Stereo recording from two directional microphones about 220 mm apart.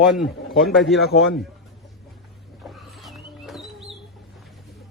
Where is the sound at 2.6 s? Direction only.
Centre (ahead or behind).